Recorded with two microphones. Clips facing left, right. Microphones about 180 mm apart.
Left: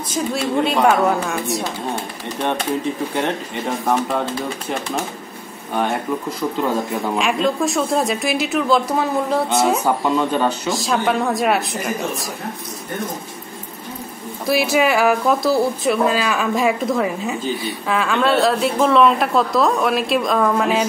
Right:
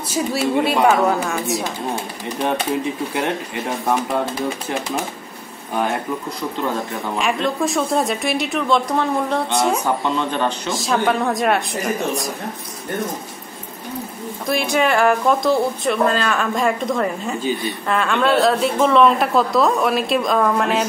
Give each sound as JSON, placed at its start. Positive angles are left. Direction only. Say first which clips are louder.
{"t": 0.1, "sound": "speech", "louder": "right 1 dB", "side_deg": -5}
{"t": 7.2, "sound": "speech", "louder": "left 1 dB", "side_deg": 0}
{"t": 14.4, "sound": "speech", "louder": "left 2 dB", "side_deg": 5}